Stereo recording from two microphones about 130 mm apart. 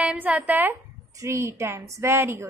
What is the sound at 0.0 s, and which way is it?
A woman's voice, 5° right (ahead or behind).